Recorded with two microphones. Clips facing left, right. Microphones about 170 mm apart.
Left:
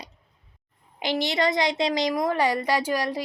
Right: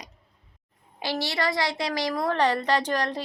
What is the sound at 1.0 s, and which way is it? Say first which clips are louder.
A woman's voice: left 4 dB; 20° left (ahead or behind).